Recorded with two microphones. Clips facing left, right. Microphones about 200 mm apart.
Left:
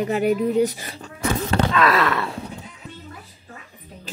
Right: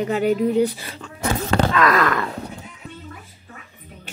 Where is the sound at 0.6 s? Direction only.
40° left (ahead or behind).